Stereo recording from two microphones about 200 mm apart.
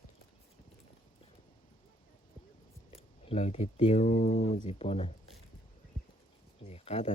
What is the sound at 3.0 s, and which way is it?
Speech, 30° left (ahead or behind).